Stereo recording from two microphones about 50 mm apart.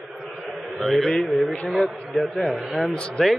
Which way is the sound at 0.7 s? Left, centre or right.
Centre.